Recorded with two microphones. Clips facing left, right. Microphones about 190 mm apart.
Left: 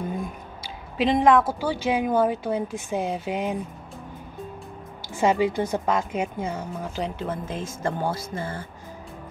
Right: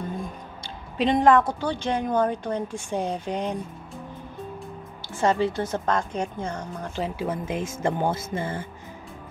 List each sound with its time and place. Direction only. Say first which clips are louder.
0.9 s a woman's voice: even; centre (ahead or behind)
5.2 s a woman's voice: left 1 dB; 10° left (ahead or behind)
7.2 s speech: right 2 dB; 15° right (ahead or behind)